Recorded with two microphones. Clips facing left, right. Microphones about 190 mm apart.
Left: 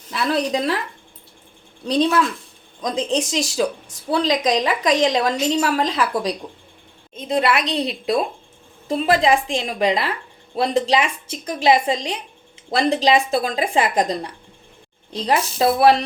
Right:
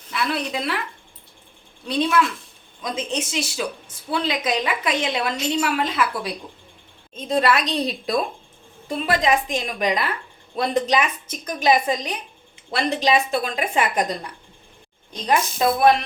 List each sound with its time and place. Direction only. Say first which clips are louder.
0.1 s a woman's voice: left 5 dB; 40° left (ahead or behind)
1.8 s a woman's voice: left 3 dB; 40° left (ahead or behind)
7.3 s a woman's voice: left 1 dB; 20° left (ahead or behind); by 16.0 s 35° left (ahead or behind)